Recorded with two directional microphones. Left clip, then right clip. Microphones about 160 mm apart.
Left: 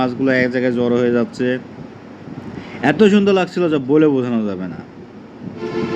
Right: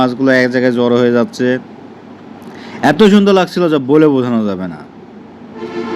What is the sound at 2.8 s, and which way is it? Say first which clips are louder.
Speech: right 4 dB; 30° right (ahead or behind).